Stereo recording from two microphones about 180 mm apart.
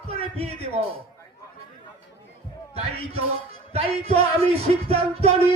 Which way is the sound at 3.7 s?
35° right (ahead or behind).